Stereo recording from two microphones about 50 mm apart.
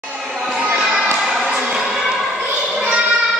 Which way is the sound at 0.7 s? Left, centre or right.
Centre.